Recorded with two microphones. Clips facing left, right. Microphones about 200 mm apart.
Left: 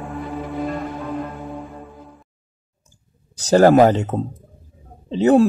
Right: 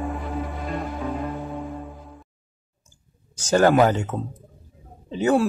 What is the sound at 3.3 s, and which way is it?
Speech, 35° left (ahead or behind).